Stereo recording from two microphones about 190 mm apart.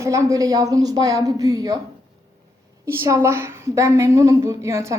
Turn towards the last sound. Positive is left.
turn(degrees=-15)  # may be behind; listen again after turning